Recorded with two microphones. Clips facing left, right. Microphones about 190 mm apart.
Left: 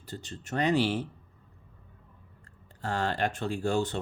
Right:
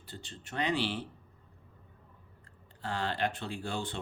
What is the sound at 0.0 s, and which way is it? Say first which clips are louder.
Speech: left 6 dB; 45° left (ahead or behind).